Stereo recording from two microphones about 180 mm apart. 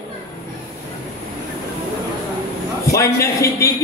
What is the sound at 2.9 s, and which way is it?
Speech, 15° left (ahead or behind).